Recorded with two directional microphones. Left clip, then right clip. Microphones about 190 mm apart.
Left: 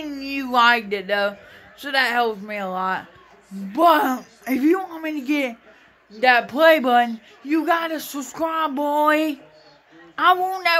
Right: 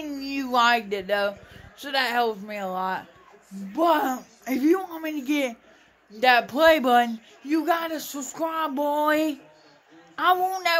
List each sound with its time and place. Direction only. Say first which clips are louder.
0.0 s speech: left 3 dB; centre (ahead or behind)
1.8 s speech: left 4 dB; 5° left (ahead or behind)
3.7 s speech: left 6 dB; 25° left (ahead or behind)
4.1 s a man's voice: left 4 dB; 10° left (ahead or behind)